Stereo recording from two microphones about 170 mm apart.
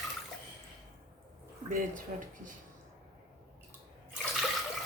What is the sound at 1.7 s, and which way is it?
Speech, 55° right (ahead or behind).